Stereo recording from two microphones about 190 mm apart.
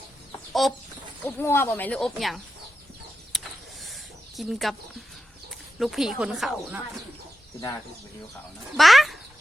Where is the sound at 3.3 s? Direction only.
Centre (ahead or behind).